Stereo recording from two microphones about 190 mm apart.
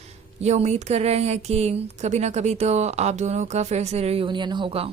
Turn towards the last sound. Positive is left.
turn(degrees=-30)  # may be behind; listen again after turning